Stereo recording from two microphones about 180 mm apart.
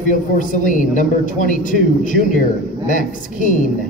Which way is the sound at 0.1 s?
45° left (ahead or behind).